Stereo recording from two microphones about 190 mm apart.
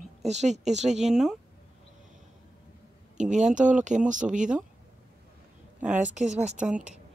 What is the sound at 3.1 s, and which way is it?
A woman's voice, 40° right (ahead or behind).